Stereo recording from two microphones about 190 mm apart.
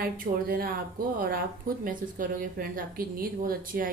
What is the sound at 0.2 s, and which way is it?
Speech, 50° right (ahead or behind).